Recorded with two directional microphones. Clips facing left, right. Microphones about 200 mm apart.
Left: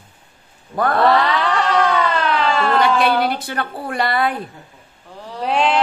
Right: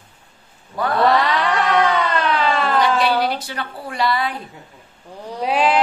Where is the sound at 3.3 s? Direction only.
55° left (ahead or behind).